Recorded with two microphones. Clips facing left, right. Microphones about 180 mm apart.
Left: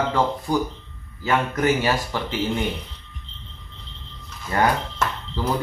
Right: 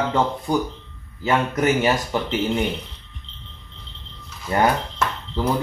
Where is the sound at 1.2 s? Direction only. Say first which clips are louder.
Right 1 dB; 20° right (ahead or behind).